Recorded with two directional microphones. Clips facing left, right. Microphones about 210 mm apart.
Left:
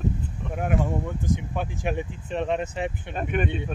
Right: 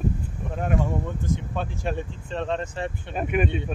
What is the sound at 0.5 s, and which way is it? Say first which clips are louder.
Speech: even; 5° left (ahead or behind).